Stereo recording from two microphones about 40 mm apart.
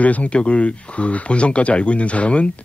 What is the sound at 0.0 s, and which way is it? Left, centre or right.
Speech, left.